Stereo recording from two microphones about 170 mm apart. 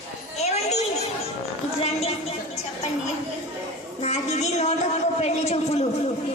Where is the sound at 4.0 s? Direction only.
40° left (ahead or behind).